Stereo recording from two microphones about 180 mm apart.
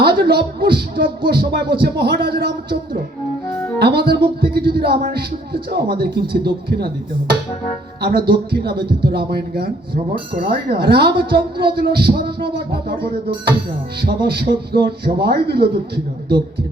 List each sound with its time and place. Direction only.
0.0 s speech: 60° right (ahead or behind)